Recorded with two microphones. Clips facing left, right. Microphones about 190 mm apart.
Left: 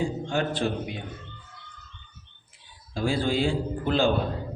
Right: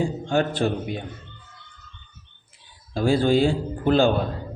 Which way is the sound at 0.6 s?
50° right (ahead or behind).